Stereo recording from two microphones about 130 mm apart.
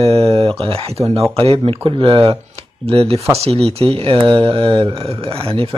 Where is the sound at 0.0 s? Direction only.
50° right (ahead or behind).